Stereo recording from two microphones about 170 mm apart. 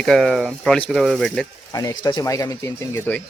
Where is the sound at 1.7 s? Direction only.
20° left (ahead or behind).